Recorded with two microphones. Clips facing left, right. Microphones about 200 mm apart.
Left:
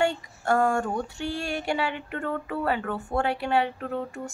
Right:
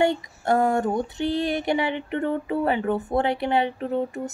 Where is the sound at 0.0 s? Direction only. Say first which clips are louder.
Right 4 dB; 20° right (ahead or behind).